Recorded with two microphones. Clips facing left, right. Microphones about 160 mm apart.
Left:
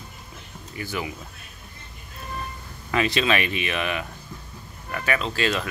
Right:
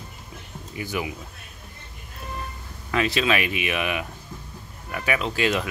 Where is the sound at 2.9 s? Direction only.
5° right (ahead or behind).